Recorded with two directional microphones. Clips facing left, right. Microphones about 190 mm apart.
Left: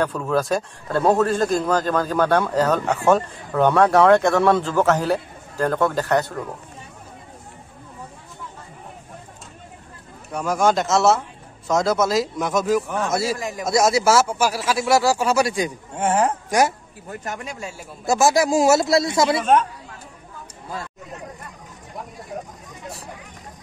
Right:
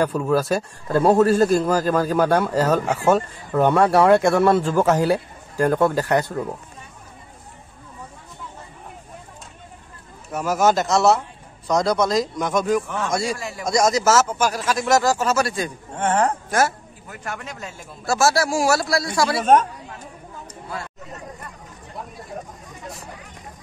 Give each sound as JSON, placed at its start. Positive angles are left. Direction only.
{"t": 0.0, "sound": "a man's voice", "side_deg": -10}
{"t": 10.3, "sound": "speech", "side_deg": -5}
{"t": 13.4, "sound": "speech", "side_deg": 15}
{"t": 13.7, "sound": "a man's voice", "side_deg": 5}